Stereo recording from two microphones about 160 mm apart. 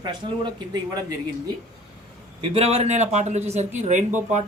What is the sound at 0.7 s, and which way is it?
Speech, 25° right (ahead or behind).